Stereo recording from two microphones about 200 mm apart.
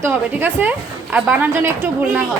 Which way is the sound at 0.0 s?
10° right (ahead or behind).